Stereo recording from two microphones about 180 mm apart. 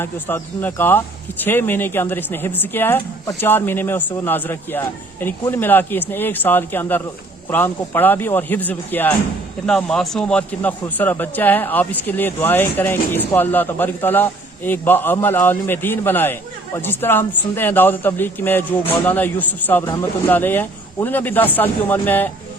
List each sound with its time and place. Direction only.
0.0 s a man's voice: 10° left (ahead or behind)